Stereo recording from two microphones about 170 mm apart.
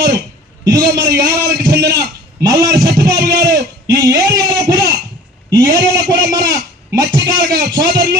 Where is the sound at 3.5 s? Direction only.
20° right (ahead or behind).